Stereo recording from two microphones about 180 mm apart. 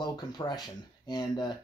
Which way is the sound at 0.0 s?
25° left (ahead or behind).